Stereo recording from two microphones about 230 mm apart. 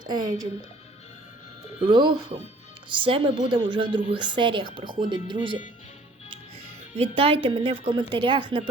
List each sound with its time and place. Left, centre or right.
0.1 s speech: centre
1.9 s a woman's voice: centre
6.9 s a woman's voice: right